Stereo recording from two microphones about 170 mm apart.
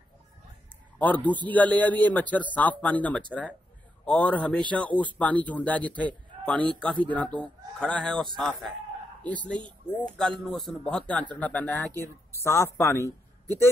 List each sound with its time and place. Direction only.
0.9 s a man's voice: 10° left (ahead or behind)
10.1 s speech: 5° left (ahead or behind)